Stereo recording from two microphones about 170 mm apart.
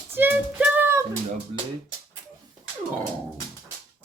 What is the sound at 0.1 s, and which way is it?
Child singing, 10° right (ahead or behind).